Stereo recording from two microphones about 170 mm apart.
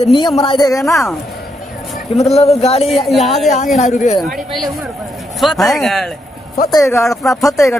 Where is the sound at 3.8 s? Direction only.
45° left (ahead or behind).